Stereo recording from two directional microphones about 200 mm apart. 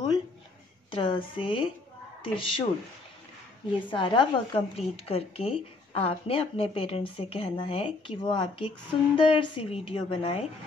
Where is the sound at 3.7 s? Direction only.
25° left (ahead or behind).